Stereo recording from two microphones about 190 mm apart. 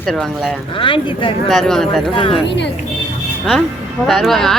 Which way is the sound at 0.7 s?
25° left (ahead or behind).